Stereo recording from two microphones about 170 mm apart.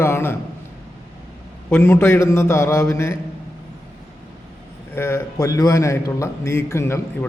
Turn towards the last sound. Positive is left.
turn(degrees=15)  # may be behind; listen again after turning